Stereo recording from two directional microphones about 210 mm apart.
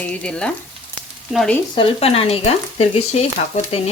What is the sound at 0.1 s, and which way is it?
Frying, 5° left (ahead or behind).